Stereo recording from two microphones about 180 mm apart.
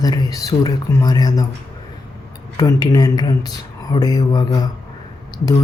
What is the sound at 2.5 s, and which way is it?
Speech, 20° left (ahead or behind).